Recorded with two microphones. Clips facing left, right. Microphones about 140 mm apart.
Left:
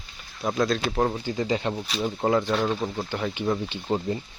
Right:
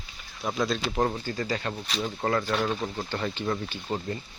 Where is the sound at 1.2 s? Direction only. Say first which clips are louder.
Left 4 dB; 15° left (ahead or behind).